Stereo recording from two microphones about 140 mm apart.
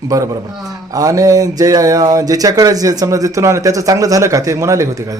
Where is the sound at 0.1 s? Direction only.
25° right (ahead or behind).